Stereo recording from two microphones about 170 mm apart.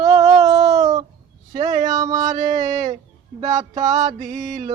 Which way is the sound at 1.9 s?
20° right (ahead or behind).